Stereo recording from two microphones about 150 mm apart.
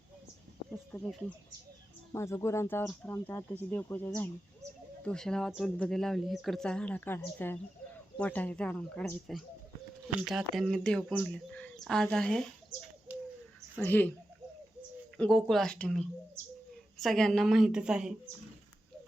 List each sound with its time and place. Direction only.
0.7 s a sound: 10° left (ahead or behind)
2.1 s speech: 20° left (ahead or behind)
13.7 s speech: 10° left (ahead or behind)